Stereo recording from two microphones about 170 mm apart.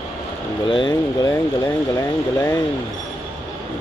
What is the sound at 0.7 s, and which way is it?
Speech, 30° left (ahead or behind).